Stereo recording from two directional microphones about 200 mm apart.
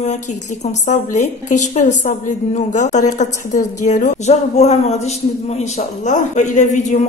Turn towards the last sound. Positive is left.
turn(degrees=40)  # may be behind; listen again after turning